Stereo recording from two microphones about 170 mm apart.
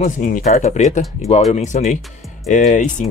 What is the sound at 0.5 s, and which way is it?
Speech, 40° left (ahead or behind).